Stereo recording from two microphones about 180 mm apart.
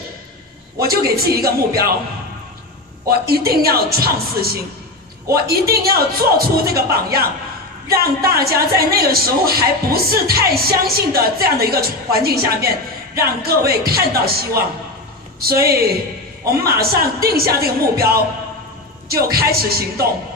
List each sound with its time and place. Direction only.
0.7 s a sound: 60° right (ahead or behind)
3.1 s a woman's voice: 60° right (ahead or behind)
15.6 s a woman's voice: 60° right (ahead or behind)